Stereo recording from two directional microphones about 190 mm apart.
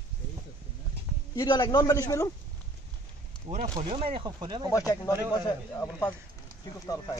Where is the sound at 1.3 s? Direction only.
20° left (ahead or behind).